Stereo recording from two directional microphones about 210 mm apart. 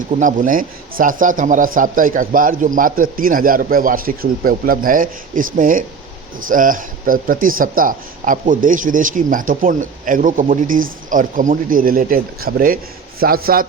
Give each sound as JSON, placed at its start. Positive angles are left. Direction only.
{"t": 0.2, "sound": "a man's voice", "side_deg": -40}